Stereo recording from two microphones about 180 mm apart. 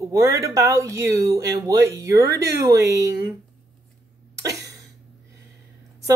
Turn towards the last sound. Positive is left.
turn(degrees=-20)  # may be behind; listen again after turning